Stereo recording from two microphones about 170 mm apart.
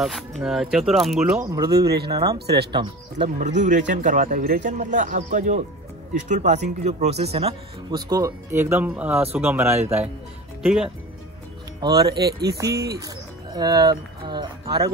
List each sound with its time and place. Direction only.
0.0 s speech: centre (ahead or behind)
1.3 s speech: 20° right (ahead or behind)
2.3 s speech: 75° right (ahead or behind)
3.3 s speech: 45° right (ahead or behind)
7.9 s speech: 20° right (ahead or behind); by 10.9 s 5° right (ahead or behind)
11.8 s speech: 25° right (ahead or behind)
12.2 s speech: 70° right (ahead or behind)
13.0 s speech: 25° right (ahead or behind)